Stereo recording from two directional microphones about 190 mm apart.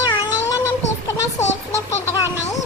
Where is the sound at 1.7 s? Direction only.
15° left (ahead or behind).